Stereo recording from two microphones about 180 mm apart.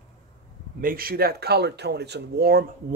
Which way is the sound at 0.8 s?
55° right (ahead or behind).